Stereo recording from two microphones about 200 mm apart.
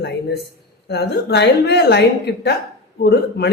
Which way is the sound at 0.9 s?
55° left (ahead or behind).